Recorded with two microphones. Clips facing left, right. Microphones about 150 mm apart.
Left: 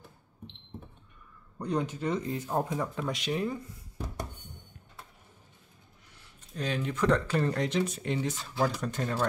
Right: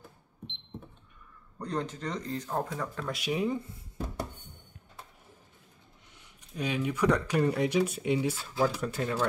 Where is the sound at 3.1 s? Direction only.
10° right (ahead or behind).